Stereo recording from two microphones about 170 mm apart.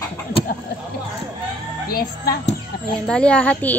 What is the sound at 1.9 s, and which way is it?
Speech, 60° left (ahead or behind).